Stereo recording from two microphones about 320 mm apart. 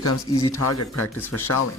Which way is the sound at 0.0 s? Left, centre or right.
Left.